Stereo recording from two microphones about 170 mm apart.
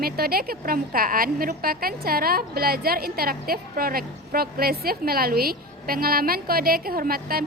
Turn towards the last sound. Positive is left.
turn(degrees=-60)  # may be behind; listen again after turning